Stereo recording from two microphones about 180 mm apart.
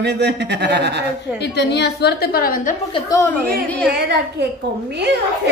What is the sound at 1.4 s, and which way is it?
A woman's voice, 70° left (ahead or behind).